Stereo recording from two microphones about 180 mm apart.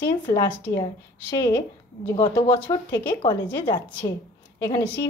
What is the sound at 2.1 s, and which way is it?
Speech, 30° left (ahead or behind).